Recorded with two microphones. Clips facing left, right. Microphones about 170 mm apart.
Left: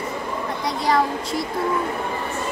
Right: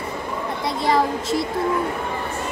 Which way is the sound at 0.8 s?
25° right (ahead or behind).